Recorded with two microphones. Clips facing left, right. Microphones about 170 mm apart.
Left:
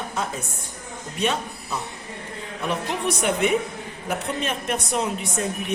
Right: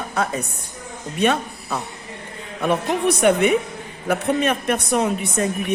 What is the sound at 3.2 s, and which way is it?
A woman's voice, 60° right (ahead or behind).